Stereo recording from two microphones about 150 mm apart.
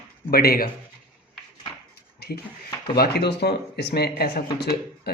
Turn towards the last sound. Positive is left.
turn(degrees=90)